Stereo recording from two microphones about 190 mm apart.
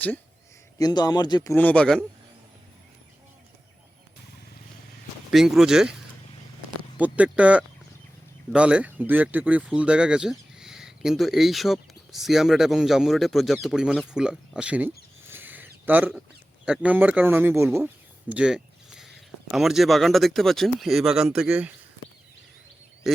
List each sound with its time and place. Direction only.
0.8 s speech: 20° left (ahead or behind)
1.5 s speech: 5° left (ahead or behind)
5.3 s speech: centre (ahead or behind)
7.0 s speech: 5° right (ahead or behind)
15.3 s a sound: 10° right (ahead or behind)
16.6 s speech: 5° right (ahead or behind)
23.1 s speech: centre (ahead or behind)